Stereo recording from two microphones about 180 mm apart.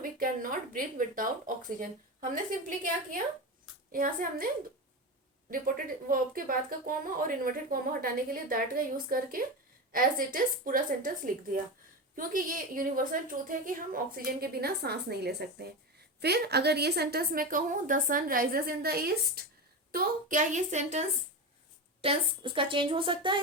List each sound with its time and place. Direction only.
0.7 s speech: 50° right (ahead or behind)
5.5 s speech: 50° right (ahead or behind)
12.1 s a woman's voice: 50° right (ahead or behind)
22.0 s a woman's voice: 30° right (ahead or behind)